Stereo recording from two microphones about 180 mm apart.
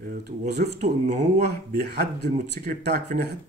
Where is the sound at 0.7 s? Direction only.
40° right (ahead or behind).